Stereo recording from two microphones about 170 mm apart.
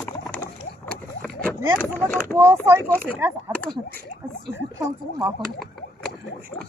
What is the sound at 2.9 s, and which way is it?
Speech, 10° left (ahead or behind).